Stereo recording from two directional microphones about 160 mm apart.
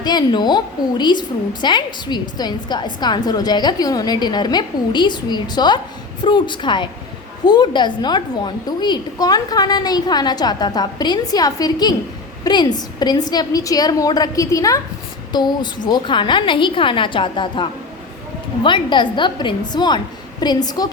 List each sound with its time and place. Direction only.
0.0 s a woman's voice: 25° left (ahead or behind)